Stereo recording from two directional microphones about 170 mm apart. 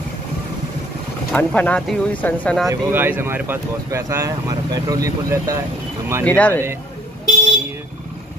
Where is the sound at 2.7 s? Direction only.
10° right (ahead or behind).